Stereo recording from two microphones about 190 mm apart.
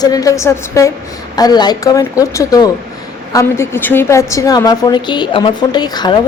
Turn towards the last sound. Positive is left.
turn(degrees=20)  # may be behind; listen again after turning